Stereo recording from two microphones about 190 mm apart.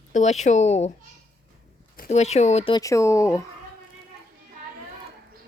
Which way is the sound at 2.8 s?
15° left (ahead or behind).